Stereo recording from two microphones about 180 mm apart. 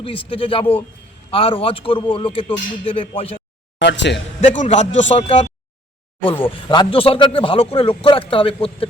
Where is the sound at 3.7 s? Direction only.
80° left.